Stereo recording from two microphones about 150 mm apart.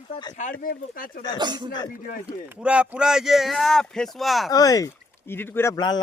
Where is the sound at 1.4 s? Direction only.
30° right (ahead or behind).